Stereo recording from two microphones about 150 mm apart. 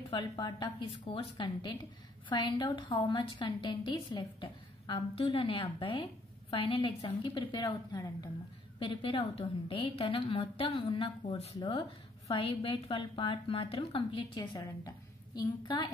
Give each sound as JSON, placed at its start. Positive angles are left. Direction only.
{"t": 0.2, "sound": "a woman's voice", "side_deg": 30}